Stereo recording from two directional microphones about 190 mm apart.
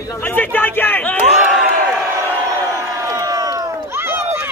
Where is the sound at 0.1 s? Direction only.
10° left (ahead or behind).